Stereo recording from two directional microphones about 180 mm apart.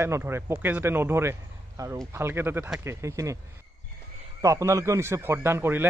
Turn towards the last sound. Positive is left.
turn(degrees=-10)  # may be behind; listen again after turning